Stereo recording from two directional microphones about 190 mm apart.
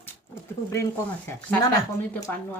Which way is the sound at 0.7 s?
15° left (ahead or behind).